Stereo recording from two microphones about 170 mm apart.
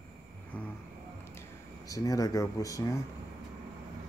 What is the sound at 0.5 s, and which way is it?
Speech, 10° left (ahead or behind).